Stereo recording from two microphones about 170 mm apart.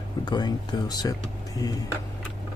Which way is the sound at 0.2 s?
25° left (ahead or behind).